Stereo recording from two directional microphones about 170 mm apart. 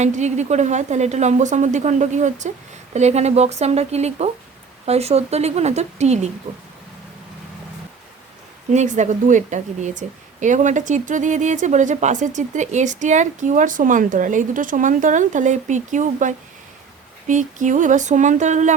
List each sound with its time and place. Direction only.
0.0 s a woman's voice: 45° right (ahead or behind)
8.7 s a woman's voice: 45° right (ahead or behind)